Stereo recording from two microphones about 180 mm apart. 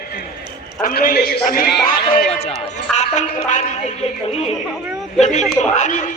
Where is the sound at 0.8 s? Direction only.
50° left (ahead or behind).